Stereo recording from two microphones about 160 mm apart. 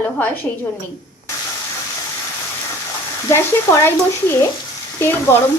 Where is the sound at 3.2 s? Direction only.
15° left (ahead or behind).